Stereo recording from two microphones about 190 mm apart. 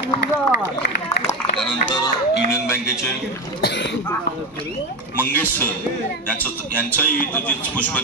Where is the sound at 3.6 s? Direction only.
60° left (ahead or behind).